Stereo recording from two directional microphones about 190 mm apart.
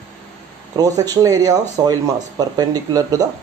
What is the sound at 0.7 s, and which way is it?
Speech, 20° right (ahead or behind).